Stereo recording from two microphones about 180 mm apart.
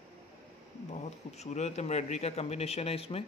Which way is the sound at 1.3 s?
40° left (ahead or behind).